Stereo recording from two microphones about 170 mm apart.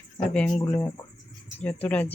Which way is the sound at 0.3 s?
5° left (ahead or behind).